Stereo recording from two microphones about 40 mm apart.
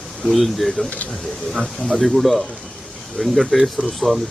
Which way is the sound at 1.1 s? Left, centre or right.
Centre.